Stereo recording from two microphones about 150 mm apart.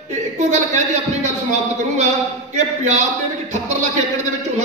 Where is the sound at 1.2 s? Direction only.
50° right (ahead or behind).